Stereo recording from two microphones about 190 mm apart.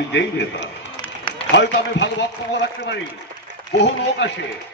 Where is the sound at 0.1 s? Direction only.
65° left (ahead or behind).